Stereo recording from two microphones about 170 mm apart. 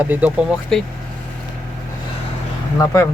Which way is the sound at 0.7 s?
5° left (ahead or behind).